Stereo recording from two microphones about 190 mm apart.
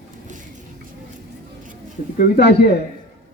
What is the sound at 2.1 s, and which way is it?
Speech, 55° left (ahead or behind).